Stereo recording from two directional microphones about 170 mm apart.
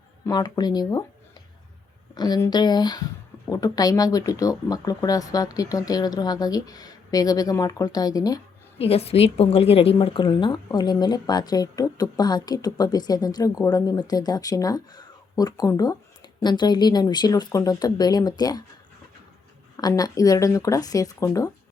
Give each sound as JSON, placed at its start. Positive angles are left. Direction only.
{"t": 0.3, "sound": "a woman's voice", "side_deg": 25}
{"t": 2.1, "sound": "a woman's voice", "side_deg": 25}
{"t": 8.8, "sound": "a woman's voice", "side_deg": 35}
{"t": 19.7, "sound": "a woman's voice", "side_deg": 20}